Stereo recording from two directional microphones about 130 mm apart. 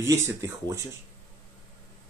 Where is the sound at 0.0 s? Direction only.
25° right (ahead or behind).